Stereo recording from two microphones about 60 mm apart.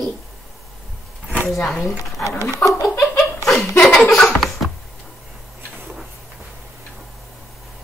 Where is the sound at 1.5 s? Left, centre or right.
Centre.